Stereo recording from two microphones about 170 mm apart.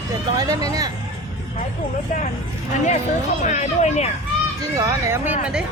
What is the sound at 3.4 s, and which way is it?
Speech, 45° left (ahead or behind).